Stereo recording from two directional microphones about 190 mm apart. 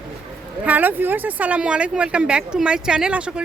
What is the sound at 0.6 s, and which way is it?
Speech, 10° right (ahead or behind).